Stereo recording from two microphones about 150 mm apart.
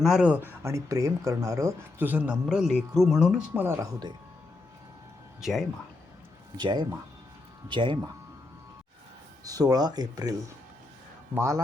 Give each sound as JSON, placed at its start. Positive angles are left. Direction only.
{"t": 0.0, "sound": "speech", "side_deg": -5}
{"t": 5.4, "sound": "speech", "side_deg": 0}
{"t": 6.6, "sound": "speech", "side_deg": -30}
{"t": 9.4, "sound": "speech", "side_deg": -25}
{"t": 11.3, "sound": "speech", "side_deg": -20}